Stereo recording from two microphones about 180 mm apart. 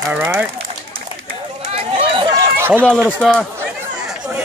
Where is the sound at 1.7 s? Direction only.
30° right (ahead or behind).